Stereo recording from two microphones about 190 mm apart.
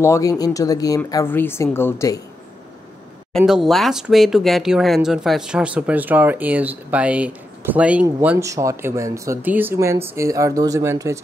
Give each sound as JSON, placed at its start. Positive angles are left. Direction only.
{"t": 0.0, "sound": "speech", "side_deg": 15}
{"t": 3.3, "sound": "speech", "side_deg": 0}